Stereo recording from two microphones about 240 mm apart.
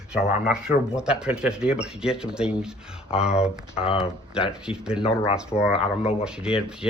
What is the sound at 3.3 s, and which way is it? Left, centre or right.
Speech, left.